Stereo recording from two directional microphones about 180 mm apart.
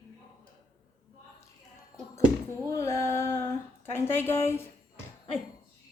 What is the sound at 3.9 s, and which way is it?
Speech, 10° left (ahead or behind).